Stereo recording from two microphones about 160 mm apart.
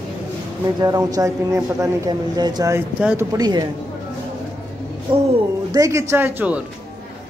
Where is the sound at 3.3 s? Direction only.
25° right (ahead or behind).